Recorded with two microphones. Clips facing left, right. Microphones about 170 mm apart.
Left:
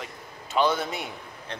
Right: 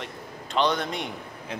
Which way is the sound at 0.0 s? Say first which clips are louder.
Right 3 dB; 5° left (ahead or behind).